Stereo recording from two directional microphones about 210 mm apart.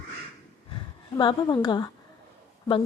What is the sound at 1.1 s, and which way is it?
Speech, 20° left (ahead or behind).